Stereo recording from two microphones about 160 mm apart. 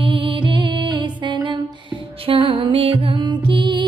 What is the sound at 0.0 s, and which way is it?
Music, 30° right (ahead or behind).